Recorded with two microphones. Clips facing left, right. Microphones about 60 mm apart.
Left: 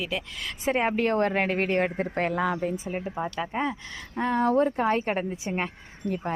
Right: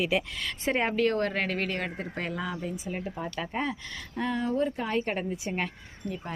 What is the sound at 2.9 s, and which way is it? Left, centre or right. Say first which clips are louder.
Speech: left 4 dB; left.